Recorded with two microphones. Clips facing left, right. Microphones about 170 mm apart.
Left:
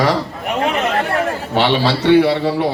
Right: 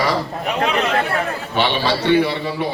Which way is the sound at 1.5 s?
75° left (ahead or behind).